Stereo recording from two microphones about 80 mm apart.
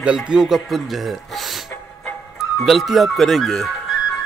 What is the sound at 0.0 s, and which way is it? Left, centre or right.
Speech, centre.